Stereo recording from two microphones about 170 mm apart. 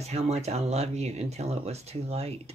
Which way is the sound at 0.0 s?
40° right (ahead or behind).